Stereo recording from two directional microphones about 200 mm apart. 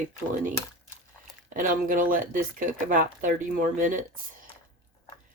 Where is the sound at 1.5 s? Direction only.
40° right (ahead or behind).